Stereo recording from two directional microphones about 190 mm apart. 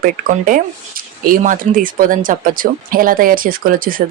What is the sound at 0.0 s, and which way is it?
Speech, 45° right (ahead or behind).